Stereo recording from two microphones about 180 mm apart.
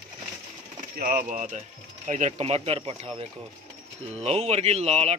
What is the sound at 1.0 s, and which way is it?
Speech, 50° right (ahead or behind).